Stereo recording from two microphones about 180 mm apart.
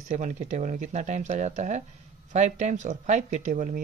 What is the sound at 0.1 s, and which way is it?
Speech, 40° right (ahead or behind).